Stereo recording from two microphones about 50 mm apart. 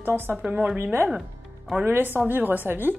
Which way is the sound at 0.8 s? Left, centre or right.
Right.